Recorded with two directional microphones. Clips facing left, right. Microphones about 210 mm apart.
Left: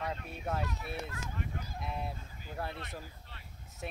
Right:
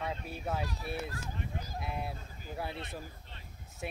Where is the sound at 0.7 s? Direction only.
35° right (ahead or behind).